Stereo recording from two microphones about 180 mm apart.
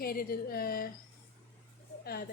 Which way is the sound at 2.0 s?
60° left (ahead or behind).